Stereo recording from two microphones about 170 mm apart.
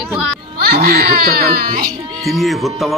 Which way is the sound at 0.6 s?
65° right (ahead or behind).